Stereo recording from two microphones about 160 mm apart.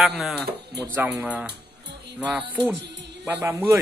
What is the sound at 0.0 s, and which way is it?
Music, centre (ahead or behind).